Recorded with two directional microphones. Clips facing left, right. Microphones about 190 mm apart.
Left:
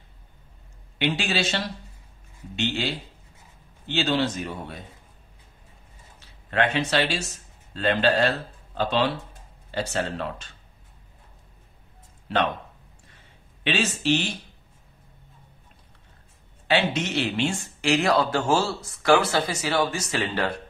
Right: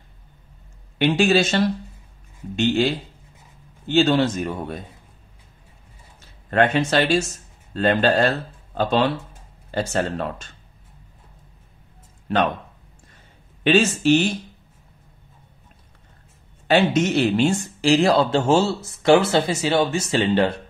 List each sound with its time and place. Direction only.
0.9 s speech: 45° right (ahead or behind)
6.1 s speech: 45° right (ahead or behind)
9.7 s speech: 45° right (ahead or behind)
13.7 s speech: 45° right (ahead or behind)
16.6 s speech: 45° right (ahead or behind); by 20.6 s 25° right (ahead or behind)